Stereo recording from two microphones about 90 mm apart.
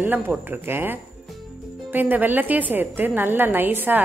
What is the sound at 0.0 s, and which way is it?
A woman's voice, 20° right (ahead or behind).